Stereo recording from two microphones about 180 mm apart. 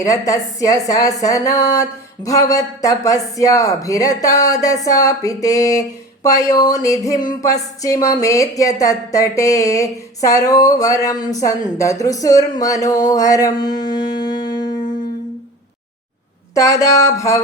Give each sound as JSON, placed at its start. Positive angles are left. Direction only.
{"t": 0.0, "sound": "a sound", "side_deg": 20}
{"t": 13.7, "sound": "music", "side_deg": 25}
{"t": 16.6, "sound": "music", "side_deg": 20}